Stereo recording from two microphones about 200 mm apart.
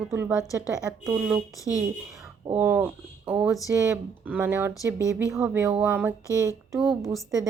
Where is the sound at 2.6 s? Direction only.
10° right (ahead or behind).